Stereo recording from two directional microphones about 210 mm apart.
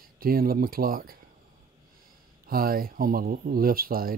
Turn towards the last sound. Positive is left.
turn(degrees=-45)  # may be behind; listen again after turning